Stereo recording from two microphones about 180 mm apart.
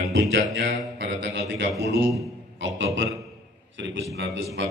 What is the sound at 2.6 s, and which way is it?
Speech, 90° right.